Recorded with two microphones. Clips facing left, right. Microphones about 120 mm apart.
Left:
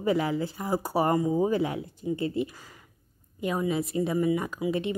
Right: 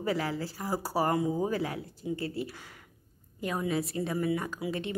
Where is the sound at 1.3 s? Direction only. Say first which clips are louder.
Left 5 dB; 20° left (ahead or behind).